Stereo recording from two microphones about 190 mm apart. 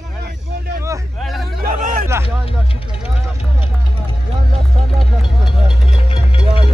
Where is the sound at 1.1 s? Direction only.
Centre (ahead or behind).